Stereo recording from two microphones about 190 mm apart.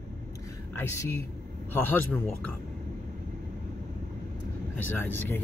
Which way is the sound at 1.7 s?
10° left (ahead or behind).